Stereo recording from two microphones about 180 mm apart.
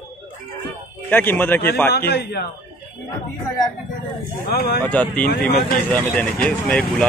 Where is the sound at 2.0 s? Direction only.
60° left (ahead or behind).